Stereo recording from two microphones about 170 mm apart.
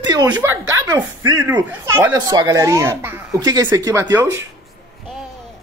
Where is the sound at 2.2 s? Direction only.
20° right (ahead or behind).